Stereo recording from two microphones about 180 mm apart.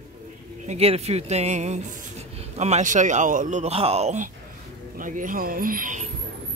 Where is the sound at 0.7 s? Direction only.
35° right (ahead or behind).